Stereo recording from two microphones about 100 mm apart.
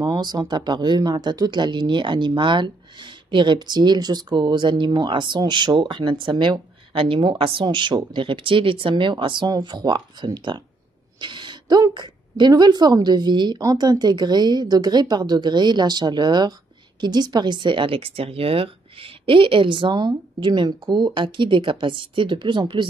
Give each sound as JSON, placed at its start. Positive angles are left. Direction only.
{"t": 0.0, "sound": "speech", "side_deg": -45}
{"t": 9.5, "sound": "speech", "side_deg": -45}
{"t": 11.1, "sound": "a sound", "side_deg": -50}
{"t": 11.9, "sound": "speech", "side_deg": -50}